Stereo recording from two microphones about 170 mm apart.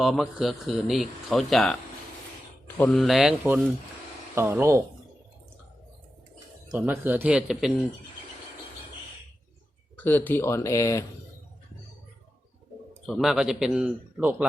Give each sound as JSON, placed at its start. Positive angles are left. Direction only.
{"t": 0.0, "sound": "a man's voice", "side_deg": 0}
{"t": 6.7, "sound": "a man's voice", "side_deg": -10}
{"t": 10.0, "sound": "speech", "side_deg": 10}
{"t": 13.1, "sound": "speech", "side_deg": 0}